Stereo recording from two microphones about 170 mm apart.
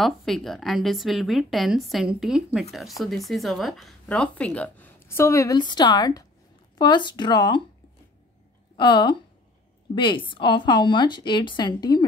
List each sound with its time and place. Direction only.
0.0 s a woman's voice: centre (ahead or behind); by 7.6 s 25° left (ahead or behind)
8.7 s a woman's voice: 25° left (ahead or behind)